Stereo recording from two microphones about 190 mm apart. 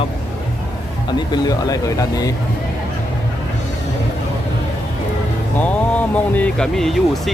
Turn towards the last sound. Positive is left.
turn(degrees=0)  # may be behind; listen again after turning